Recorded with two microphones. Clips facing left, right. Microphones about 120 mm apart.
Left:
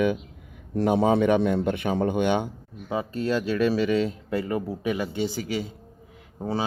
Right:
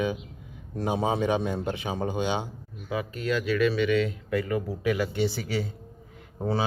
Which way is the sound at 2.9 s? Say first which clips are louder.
Left 3 dB; 30° left (ahead or behind).